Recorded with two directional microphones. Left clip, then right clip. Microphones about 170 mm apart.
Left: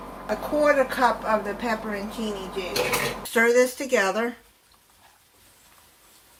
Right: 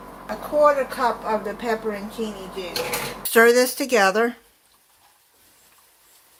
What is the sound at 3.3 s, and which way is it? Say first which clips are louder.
Speech: right 4 dB; 60° right (ahead or behind).